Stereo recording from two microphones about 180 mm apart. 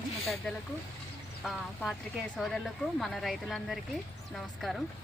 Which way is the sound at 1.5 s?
Centre (ahead or behind).